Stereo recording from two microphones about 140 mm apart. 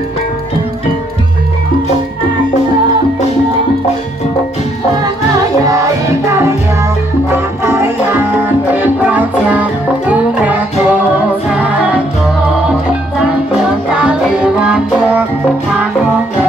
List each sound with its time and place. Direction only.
5.7 s music: 20° right (ahead or behind)
13.9 s music: 5° right (ahead or behind)